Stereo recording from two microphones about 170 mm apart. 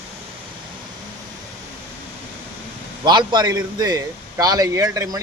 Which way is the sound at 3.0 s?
25° right (ahead or behind).